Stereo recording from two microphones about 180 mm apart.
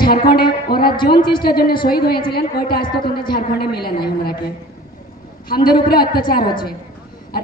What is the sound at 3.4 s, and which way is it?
Speech, 60° left (ahead or behind).